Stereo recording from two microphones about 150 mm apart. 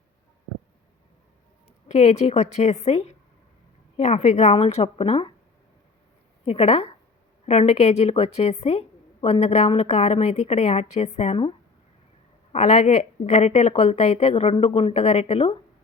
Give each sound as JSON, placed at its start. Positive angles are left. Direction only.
{"t": 1.9, "sound": "a woman's voice", "side_deg": 50}
{"t": 6.4, "sound": "a woman's voice", "side_deg": 45}
{"t": 12.5, "sound": "a woman's voice", "side_deg": 50}